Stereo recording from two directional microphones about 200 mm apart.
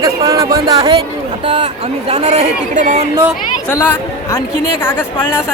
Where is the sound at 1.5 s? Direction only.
30° right (ahead or behind).